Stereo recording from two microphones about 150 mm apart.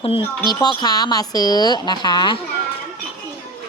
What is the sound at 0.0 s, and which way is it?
A woman's voice, 35° left (ahead or behind).